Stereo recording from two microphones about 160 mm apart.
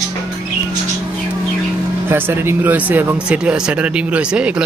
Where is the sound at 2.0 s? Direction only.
15° right (ahead or behind).